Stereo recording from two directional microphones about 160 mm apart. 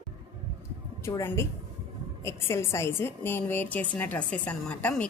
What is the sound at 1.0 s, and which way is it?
A woman's voice, 15° left (ahead or behind).